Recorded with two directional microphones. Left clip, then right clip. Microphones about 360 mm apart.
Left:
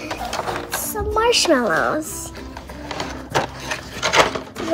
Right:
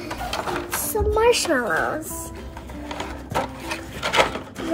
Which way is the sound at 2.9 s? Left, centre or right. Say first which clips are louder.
Left 4 dB; left.